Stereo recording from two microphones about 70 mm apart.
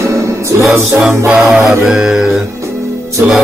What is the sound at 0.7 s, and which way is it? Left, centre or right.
Music, centre.